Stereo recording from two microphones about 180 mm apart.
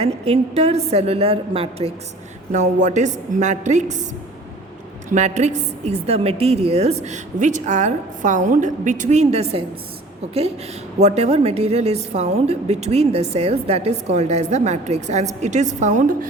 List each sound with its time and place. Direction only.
0.0 s a woman's voice: 35° right (ahead or behind)
5.1 s a woman's voice: 40° right (ahead or behind)
11.0 s a woman's voice: 35° right (ahead or behind)